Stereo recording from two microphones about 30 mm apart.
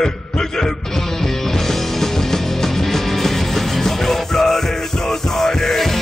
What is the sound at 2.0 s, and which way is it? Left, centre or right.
Music, centre.